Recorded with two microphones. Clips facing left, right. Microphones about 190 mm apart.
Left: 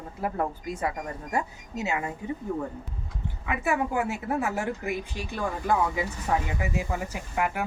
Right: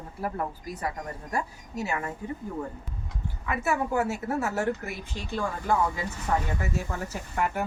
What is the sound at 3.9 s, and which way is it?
Speech, 15° left (ahead or behind).